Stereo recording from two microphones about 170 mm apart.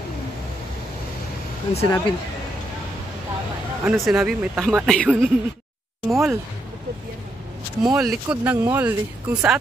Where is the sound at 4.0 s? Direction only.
Centre (ahead or behind).